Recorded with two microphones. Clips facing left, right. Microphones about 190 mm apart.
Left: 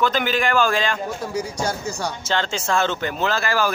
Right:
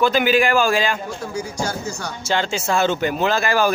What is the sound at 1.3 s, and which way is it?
Speech, 30° right (ahead or behind).